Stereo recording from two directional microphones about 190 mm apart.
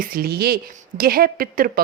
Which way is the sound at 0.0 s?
50° right (ahead or behind).